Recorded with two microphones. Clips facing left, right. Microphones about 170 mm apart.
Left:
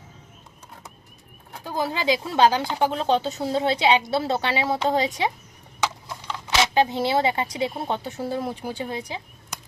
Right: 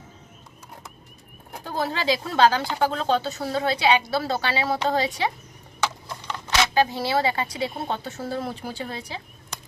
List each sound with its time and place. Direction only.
1.6 s speech: 10° left (ahead or behind)
6.1 s a sound: 5° left (ahead or behind)
6.6 s speech: 20° left (ahead or behind)